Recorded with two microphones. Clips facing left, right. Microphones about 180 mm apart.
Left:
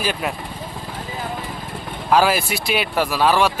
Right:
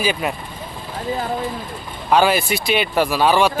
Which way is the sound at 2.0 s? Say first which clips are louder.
Right 1 dB; centre (ahead or behind).